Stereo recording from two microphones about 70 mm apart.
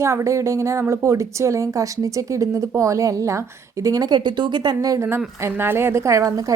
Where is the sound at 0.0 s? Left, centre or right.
Right.